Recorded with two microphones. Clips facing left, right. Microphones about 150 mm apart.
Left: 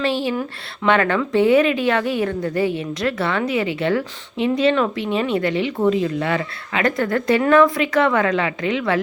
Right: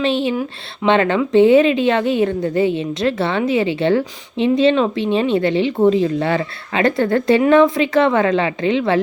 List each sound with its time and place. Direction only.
0.0 s a woman's voice: 20° right (ahead or behind)